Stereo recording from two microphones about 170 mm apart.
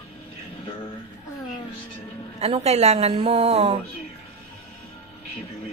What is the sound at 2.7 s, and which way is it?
A woman's voice, 40° right (ahead or behind).